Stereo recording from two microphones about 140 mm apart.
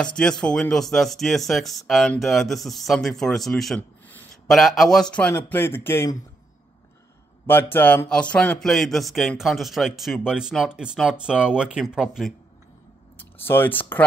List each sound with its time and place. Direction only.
0.0 s speech: 5° left (ahead or behind)
7.7 s speech: 15° left (ahead or behind); by 12.4 s centre (ahead or behind)
13.2 s speech: 15° left (ahead or behind)